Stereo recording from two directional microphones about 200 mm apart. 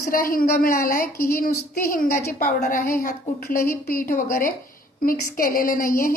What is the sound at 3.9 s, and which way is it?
A woman's voice, 45° left (ahead or behind).